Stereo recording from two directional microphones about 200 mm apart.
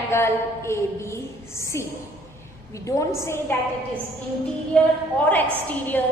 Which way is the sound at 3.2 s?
15° left (ahead or behind).